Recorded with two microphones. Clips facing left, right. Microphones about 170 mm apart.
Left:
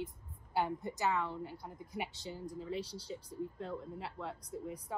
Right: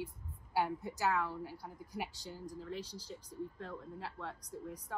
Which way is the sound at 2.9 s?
30° left (ahead or behind).